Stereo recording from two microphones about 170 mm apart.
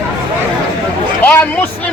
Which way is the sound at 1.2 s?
10° left (ahead or behind).